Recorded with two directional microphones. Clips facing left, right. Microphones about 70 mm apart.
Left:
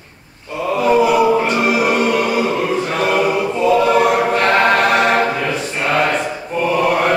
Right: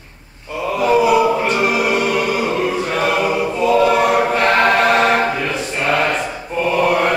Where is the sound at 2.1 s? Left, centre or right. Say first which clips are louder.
Left 2 dB; centre.